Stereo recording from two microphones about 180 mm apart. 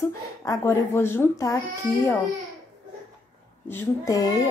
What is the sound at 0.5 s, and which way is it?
Speech, 15° left (ahead or behind).